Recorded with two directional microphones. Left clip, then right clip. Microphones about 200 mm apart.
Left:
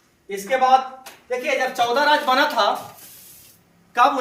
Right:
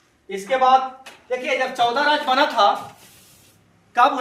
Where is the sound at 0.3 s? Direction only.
15° left (ahead or behind).